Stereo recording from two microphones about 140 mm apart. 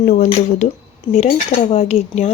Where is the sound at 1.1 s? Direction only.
50° left (ahead or behind).